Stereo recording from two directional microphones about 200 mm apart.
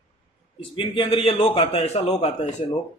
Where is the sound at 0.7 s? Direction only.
25° left (ahead or behind).